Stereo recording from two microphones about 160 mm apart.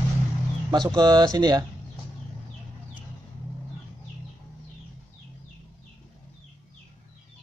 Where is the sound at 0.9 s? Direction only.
25° right (ahead or behind).